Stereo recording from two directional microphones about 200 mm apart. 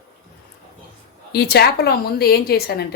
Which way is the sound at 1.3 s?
50° left (ahead or behind).